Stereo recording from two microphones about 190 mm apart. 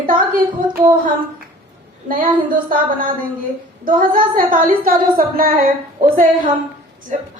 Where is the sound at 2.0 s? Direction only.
45° right (ahead or behind).